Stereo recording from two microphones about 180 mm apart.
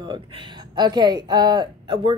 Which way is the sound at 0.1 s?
25° right (ahead or behind).